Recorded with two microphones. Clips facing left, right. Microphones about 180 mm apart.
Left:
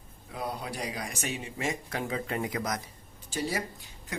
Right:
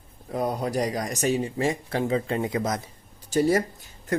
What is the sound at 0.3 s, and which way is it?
Speech, 45° right (ahead or behind).